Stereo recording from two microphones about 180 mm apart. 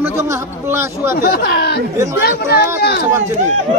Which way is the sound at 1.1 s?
55° left (ahead or behind).